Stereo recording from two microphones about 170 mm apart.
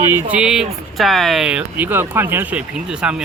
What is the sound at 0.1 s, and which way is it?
Speech, 10° right (ahead or behind).